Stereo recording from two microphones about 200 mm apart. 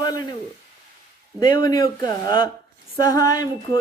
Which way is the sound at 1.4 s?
20° left (ahead or behind).